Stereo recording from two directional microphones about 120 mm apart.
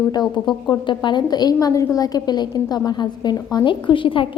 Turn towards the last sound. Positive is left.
turn(degrees=45)  # may be behind; listen again after turning